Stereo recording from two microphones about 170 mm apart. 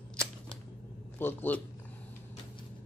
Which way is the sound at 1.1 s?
10° left (ahead or behind).